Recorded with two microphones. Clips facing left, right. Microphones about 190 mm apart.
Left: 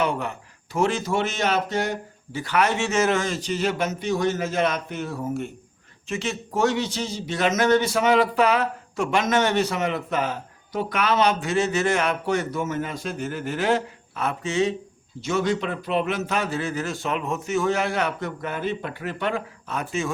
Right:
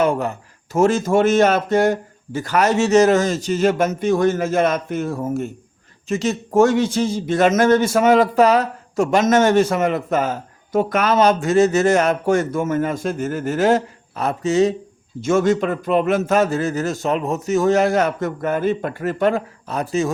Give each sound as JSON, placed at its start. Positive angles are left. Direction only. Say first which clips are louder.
{"t": 0.0, "sound": "a man's voice", "louder": "right 6 dB", "side_deg": -45}